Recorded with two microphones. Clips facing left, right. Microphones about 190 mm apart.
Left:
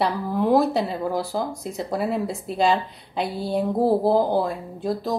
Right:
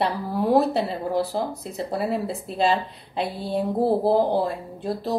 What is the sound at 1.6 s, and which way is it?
A woman's voice, centre (ahead or behind).